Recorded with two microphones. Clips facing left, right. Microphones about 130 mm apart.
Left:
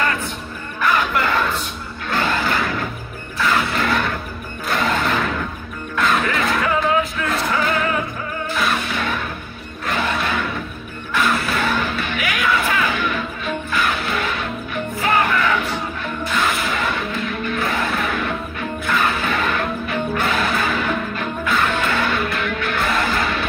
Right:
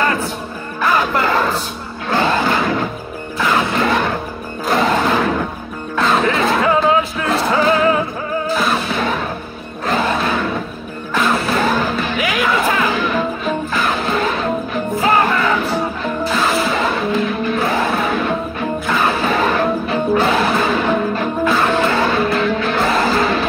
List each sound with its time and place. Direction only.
0.7 s music: 35° right (ahead or behind)